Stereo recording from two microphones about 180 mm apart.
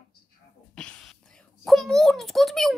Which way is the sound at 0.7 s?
5° left (ahead or behind).